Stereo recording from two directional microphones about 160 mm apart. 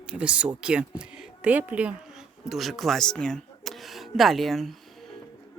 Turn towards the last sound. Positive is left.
turn(degrees=0)  # may be behind; listen again after turning